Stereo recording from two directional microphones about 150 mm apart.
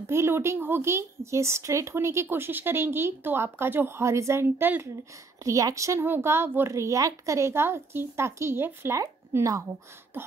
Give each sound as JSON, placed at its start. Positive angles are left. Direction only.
{"t": 0.0, "sound": "a woman's voice", "side_deg": -15}